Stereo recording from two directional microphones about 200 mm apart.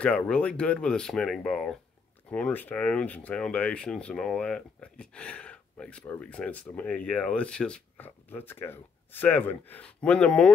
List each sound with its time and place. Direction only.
0.0 s speech: 5° left (ahead or behind)